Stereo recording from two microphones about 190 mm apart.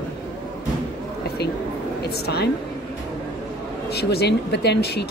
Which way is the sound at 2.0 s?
60° left (ahead or behind).